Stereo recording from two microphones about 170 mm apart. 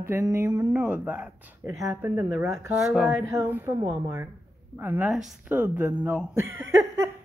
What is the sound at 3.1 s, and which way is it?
Speech, 15° right (ahead or behind).